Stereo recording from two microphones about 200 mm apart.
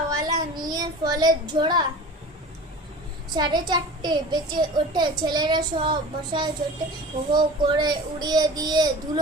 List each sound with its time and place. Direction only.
0.1 s child singing: 20° right (ahead or behind)
3.3 s a child's voice: 20° right (ahead or behind)